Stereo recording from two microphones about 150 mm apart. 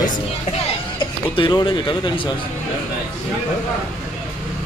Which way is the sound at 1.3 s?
35° left (ahead or behind).